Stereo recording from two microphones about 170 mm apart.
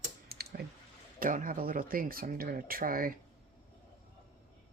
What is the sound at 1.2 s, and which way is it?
Speech, 50° right (ahead or behind).